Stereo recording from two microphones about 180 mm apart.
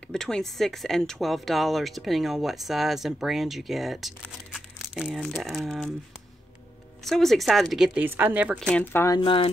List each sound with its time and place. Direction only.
0.1 s speech: 5° left (ahead or behind)
7.1 s speech: centre (ahead or behind)
8.5 s speech: 5° left (ahead or behind)
9.0 s speech: 25° left (ahead or behind)